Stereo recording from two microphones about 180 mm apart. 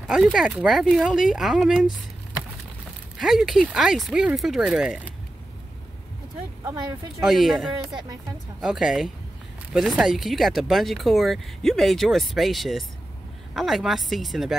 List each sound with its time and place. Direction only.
0.1 s speech: 5° right (ahead or behind)
3.2 s speech: centre (ahead or behind)
7.2 s speech: centre (ahead or behind)
7.9 s speech: 20° right (ahead or behind)
8.5 s speech: centre (ahead or behind)